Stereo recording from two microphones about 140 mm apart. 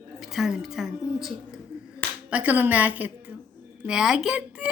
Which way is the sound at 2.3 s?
10° right (ahead or behind).